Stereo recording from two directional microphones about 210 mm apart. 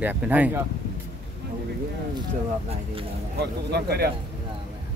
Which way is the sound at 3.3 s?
50° right (ahead or behind).